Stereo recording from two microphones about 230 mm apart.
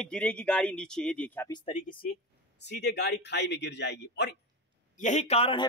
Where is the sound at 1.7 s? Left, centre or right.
Left.